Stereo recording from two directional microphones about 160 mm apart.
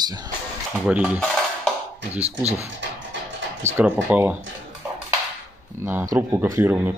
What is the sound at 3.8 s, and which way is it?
Speech, 10° right (ahead or behind).